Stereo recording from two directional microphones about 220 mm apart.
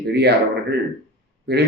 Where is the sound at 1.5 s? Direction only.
45° right (ahead or behind).